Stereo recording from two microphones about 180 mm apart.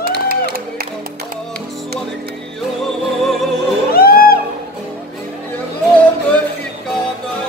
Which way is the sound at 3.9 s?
55° left (ahead or behind).